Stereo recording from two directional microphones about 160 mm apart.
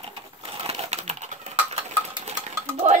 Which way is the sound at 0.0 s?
35° right (ahead or behind).